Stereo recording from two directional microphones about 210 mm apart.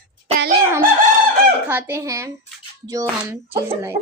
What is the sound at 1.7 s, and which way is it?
Speech, 10° right (ahead or behind).